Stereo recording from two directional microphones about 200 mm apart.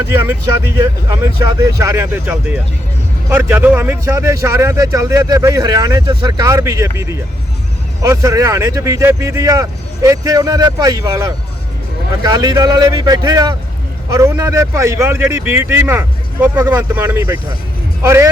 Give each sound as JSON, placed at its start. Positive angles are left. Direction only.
{"t": 1.1, "sound": "speech", "side_deg": -15}
{"t": 3.2, "sound": "a man's voice", "side_deg": -10}